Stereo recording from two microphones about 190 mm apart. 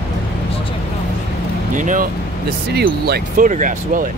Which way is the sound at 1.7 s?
45° right (ahead or behind).